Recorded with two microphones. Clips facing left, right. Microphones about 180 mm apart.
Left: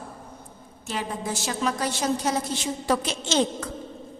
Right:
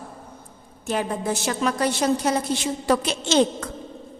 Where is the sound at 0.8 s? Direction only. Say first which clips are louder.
Right 5 dB; 55° right (ahead or behind).